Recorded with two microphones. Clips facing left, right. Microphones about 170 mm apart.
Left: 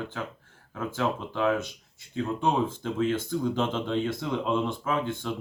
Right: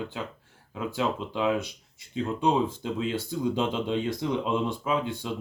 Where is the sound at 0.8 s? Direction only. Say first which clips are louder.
Even; 15° right (ahead or behind).